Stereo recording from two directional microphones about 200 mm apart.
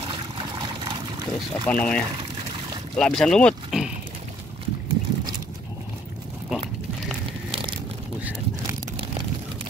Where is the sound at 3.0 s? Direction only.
Centre (ahead or behind).